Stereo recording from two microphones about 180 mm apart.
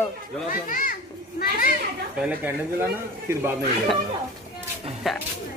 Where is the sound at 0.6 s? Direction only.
50° left (ahead or behind).